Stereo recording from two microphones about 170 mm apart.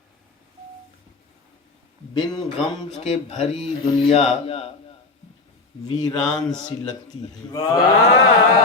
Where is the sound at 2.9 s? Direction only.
40° left (ahead or behind).